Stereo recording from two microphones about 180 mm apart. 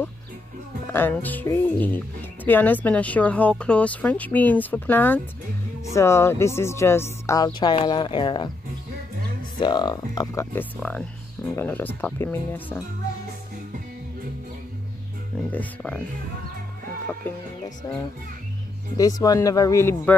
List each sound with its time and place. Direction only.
0.9 s speech: 10° left (ahead or behind); by 8.5 s 25° left (ahead or behind)
9.6 s speech: 25° left (ahead or behind)
15.5 s speech: 5° left (ahead or behind)
17.6 s speech: 20° left (ahead or behind)